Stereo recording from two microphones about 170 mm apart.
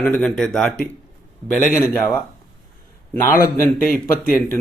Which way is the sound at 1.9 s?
10° left (ahead or behind).